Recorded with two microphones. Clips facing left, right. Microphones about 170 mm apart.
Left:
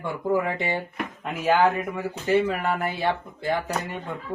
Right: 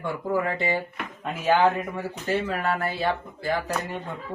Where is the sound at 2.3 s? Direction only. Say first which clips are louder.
Left 4 dB; 15° left (ahead or behind).